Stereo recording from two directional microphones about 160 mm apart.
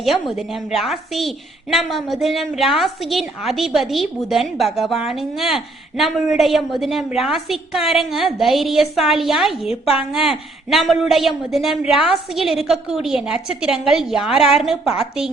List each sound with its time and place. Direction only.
0.0 s a woman's voice: centre (ahead or behind)